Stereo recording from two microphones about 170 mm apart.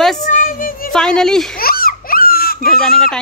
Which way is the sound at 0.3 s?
50° left (ahead or behind).